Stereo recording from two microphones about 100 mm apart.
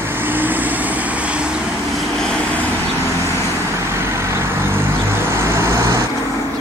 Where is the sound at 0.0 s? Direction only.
20° right (ahead or behind).